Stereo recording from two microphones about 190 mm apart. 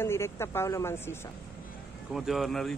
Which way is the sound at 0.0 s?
15° left (ahead or behind).